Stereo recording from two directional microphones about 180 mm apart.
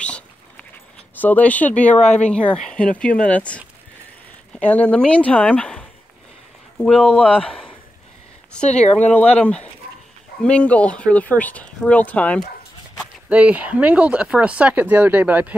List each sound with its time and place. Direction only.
0.0 s dog: 5° left (ahead or behind)
1.2 s speech: 10° left (ahead or behind)
2.0 s speech: 40° left (ahead or behind)
2.2 s speech: 5° left (ahead or behind)
8.6 s speech: 35° left (ahead or behind)
9.4 s speech: 5° left (ahead or behind)
13.3 s speech: 5° right (ahead or behind)